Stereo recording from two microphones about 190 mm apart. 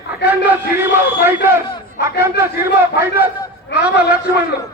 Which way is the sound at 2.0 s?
65° left (ahead or behind).